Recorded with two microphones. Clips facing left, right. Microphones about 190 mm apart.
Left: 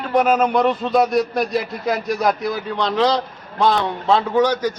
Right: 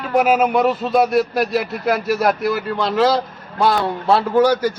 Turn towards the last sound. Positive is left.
turn(degrees=-10)  # may be behind; listen again after turning